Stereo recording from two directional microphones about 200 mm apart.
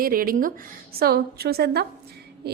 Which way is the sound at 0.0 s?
45° right (ahead or behind).